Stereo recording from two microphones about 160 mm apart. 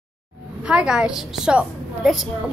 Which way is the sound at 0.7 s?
5° right (ahead or behind).